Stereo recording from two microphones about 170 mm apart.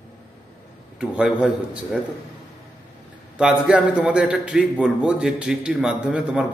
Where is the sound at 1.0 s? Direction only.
5° right (ahead or behind).